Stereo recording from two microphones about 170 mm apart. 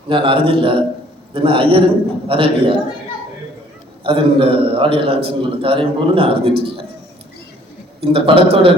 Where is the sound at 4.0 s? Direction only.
30° right (ahead or behind).